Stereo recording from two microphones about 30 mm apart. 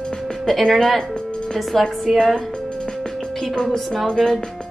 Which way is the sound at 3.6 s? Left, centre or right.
Centre.